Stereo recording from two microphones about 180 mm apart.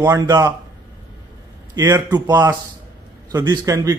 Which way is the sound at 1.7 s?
20° right (ahead or behind).